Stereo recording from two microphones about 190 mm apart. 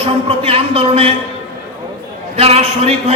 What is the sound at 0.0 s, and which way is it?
A man's voice, 30° right (ahead or behind).